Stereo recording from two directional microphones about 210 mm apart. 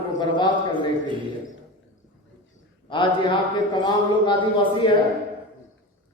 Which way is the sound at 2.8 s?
25° left (ahead or behind).